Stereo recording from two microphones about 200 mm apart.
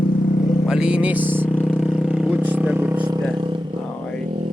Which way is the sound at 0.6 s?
5° right (ahead or behind).